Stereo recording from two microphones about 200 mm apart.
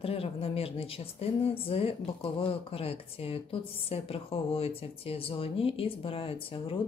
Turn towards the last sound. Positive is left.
turn(degrees=25)  # may be behind; listen again after turning